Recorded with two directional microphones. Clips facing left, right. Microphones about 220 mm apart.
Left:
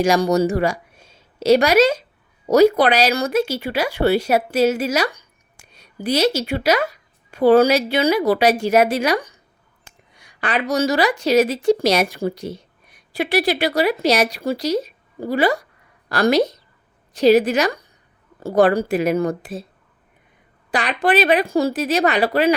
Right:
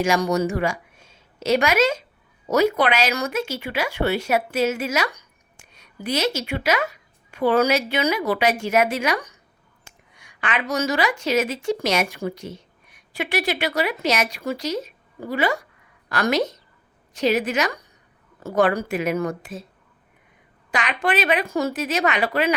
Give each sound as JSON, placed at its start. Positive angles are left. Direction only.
{"t": 0.0, "sound": "a woman's voice", "side_deg": 35}
{"t": 20.7, "sound": "speech", "side_deg": 35}